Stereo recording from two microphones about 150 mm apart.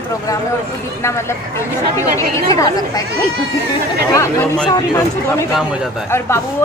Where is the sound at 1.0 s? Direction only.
20° left (ahead or behind).